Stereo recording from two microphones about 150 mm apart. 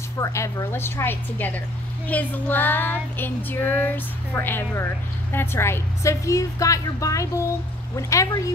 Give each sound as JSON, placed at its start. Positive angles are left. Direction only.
{"t": 0.2, "sound": "female singing", "side_deg": 20}
{"t": 5.3, "sound": "a woman's voice", "side_deg": 15}